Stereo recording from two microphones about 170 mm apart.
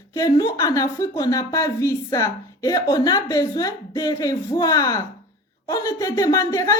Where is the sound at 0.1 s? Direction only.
20° left (ahead or behind).